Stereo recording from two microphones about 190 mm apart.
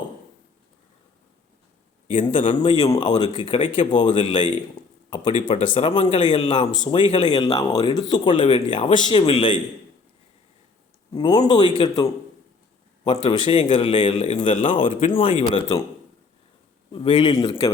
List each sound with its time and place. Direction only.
2.0 s speech: 30° left (ahead or behind)
11.1 s speech: 25° left (ahead or behind)
13.2 s speech: 25° left (ahead or behind)
16.9 s speech: 25° left (ahead or behind)